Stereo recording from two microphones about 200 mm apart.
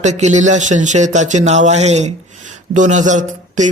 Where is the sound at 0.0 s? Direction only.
35° right (ahead or behind).